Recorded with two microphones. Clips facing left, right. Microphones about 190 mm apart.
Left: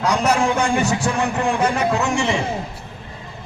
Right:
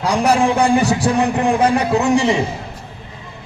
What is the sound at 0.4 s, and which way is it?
A man's voice, 35° right (ahead or behind).